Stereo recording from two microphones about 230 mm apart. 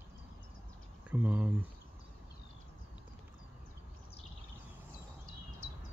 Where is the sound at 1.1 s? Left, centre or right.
Centre.